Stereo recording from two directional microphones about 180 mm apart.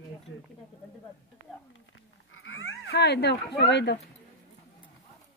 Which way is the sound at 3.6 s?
75° left (ahead or behind).